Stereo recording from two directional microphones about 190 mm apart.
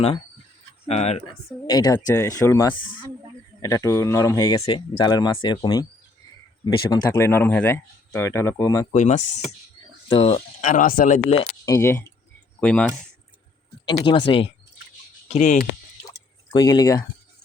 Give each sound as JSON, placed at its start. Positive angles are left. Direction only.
{"t": 0.9, "sound": "speech", "side_deg": 35}
{"t": 1.6, "sound": "speech", "side_deg": 20}
{"t": 8.9, "sound": "speech", "side_deg": 40}
{"t": 11.6, "sound": "speech", "side_deg": 15}
{"t": 13.8, "sound": "speech", "side_deg": 25}
{"t": 15.3, "sound": "speech", "side_deg": 40}
{"t": 16.0, "sound": "drip", "side_deg": 20}